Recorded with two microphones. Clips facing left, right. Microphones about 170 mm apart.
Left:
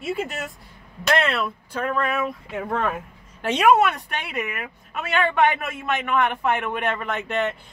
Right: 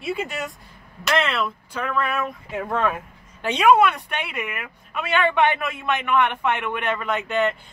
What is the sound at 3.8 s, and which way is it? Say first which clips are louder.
A man's voice: right 2 dB; 40° left (ahead or behind).